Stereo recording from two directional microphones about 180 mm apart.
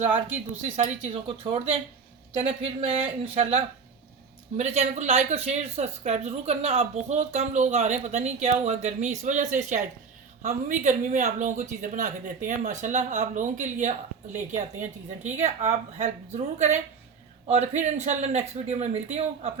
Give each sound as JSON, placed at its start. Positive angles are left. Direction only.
{"t": 0.6, "sound": "speech", "side_deg": -35}